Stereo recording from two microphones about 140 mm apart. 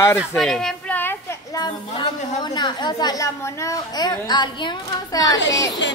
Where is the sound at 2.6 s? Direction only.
30° left (ahead or behind).